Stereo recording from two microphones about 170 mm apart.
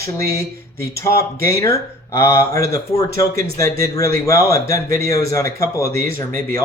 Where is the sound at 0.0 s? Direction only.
20° left (ahead or behind).